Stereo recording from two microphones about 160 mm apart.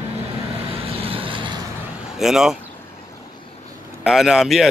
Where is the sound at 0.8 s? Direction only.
35° right (ahead or behind).